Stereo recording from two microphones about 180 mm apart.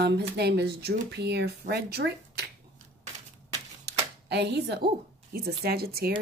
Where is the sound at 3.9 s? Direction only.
65° right (ahead or behind).